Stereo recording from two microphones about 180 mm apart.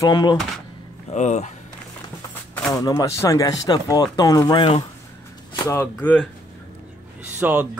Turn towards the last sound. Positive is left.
turn(degrees=-10)  # may be behind; listen again after turning